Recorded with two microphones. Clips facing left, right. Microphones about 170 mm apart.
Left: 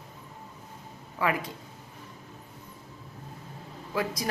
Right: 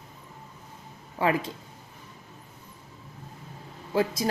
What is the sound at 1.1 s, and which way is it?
Speech, 30° right (ahead or behind).